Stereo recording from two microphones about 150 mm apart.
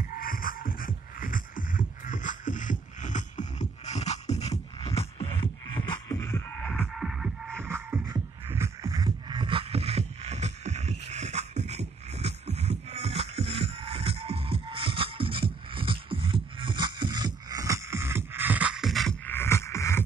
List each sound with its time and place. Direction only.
0.2 s music: 70° left (ahead or behind); by 5.0 s 45° left (ahead or behind)
6.0 s music: 20° left (ahead or behind)
6.6 s music: centre (ahead or behind)
7.6 s music: 15° right (ahead or behind); by 19.1 s centre (ahead or behind)
19.2 s music: 15° left (ahead or behind)